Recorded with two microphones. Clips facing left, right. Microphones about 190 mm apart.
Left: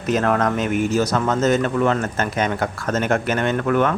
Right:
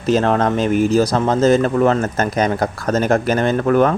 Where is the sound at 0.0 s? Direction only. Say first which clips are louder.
Right 3 dB; 30° right (ahead or behind).